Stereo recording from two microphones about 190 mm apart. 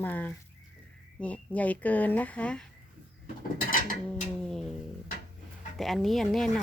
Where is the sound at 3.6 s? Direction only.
45° left (ahead or behind).